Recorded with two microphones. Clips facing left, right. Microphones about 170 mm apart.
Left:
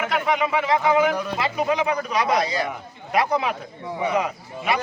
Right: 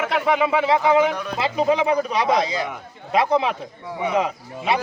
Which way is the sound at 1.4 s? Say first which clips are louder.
Right 7 dB; 25° right (ahead or behind).